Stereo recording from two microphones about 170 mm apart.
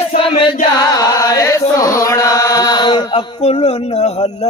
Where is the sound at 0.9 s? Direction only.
20° left (ahead or behind).